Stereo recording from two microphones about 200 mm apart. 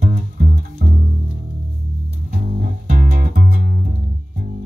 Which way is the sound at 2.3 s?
45° right (ahead or behind).